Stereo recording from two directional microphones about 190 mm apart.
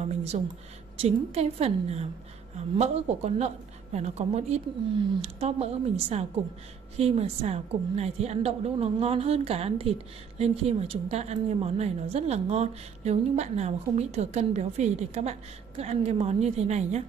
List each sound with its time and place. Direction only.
0.3 s a woman's voice: 35° right (ahead or behind)